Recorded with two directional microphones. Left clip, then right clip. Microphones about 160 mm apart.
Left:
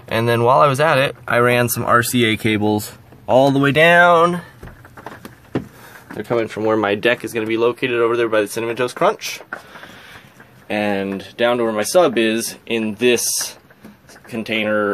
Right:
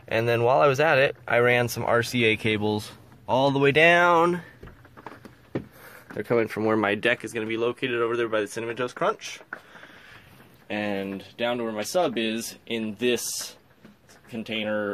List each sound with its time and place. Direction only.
0.1 s speech: 10° right (ahead or behind)
6.1 s speech: 30° right (ahead or behind)
6.8 s speech: 5° right (ahead or behind); by 9.4 s 10° left (ahead or behind)
10.7 s speech: 5° left (ahead or behind)
14.5 s speech: centre (ahead or behind)